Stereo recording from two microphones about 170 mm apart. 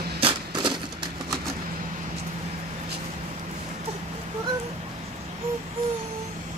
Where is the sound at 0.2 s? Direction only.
30° right (ahead or behind).